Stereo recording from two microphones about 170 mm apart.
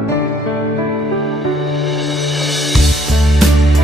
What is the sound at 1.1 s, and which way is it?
Music, centre (ahead or behind).